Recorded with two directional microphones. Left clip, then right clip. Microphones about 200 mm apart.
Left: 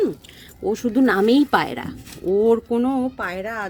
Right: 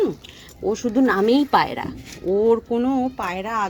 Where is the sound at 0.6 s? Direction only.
20° left (ahead or behind).